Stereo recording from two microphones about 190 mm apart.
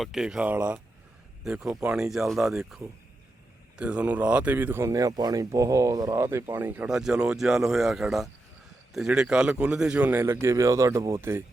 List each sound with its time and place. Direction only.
0.0 s a man's voice: 5° right (ahead or behind)